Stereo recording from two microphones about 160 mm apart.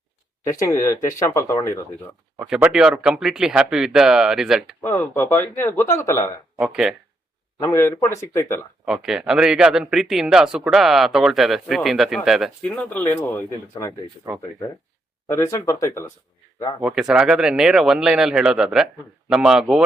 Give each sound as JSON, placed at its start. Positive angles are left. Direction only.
{"t": 0.4, "sound": "speech", "side_deg": 20}
{"t": 2.4, "sound": "speech", "side_deg": -10}
{"t": 4.8, "sound": "speech", "side_deg": 15}
{"t": 6.6, "sound": "speech", "side_deg": -5}
{"t": 7.6, "sound": "speech", "side_deg": 20}
{"t": 8.8, "sound": "speech", "side_deg": -5}
{"t": 12.6, "sound": "speech", "side_deg": 10}
{"t": 15.3, "sound": "speech", "side_deg": 20}
{"t": 16.8, "sound": "speech", "side_deg": -5}